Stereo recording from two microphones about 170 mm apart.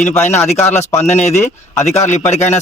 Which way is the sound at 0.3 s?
10° left (ahead or behind).